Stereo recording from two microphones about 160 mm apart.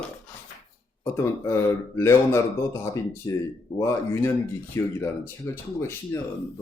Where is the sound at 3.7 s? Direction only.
15° left (ahead or behind).